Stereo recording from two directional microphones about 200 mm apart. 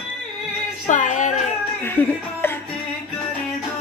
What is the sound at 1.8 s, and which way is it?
Speech, 10° left (ahead or behind).